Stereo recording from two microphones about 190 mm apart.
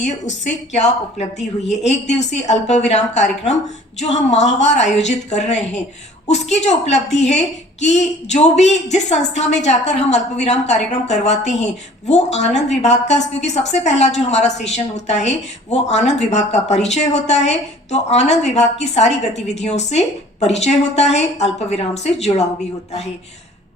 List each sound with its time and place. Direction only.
0.7 s a woman's voice: 35° left (ahead or behind)